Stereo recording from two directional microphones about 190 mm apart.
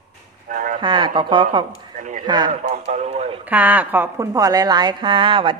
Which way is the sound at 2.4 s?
40° right (ahead or behind).